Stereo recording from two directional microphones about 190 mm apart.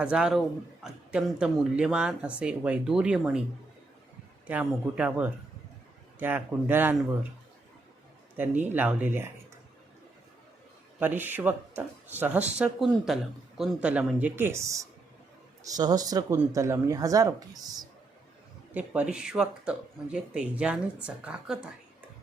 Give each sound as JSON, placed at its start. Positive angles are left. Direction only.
{"t": 0.0, "sound": "speech", "side_deg": -5}
{"t": 4.4, "sound": "speech", "side_deg": -5}
{"t": 8.4, "sound": "speech", "side_deg": -10}
{"t": 11.0, "sound": "speech", "side_deg": -10}
{"t": 18.7, "sound": "speech", "side_deg": -10}